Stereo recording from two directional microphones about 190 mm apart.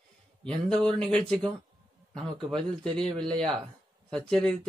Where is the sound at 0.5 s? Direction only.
5° left (ahead or behind).